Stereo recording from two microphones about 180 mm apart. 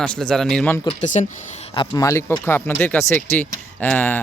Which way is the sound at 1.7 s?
20° left (ahead or behind).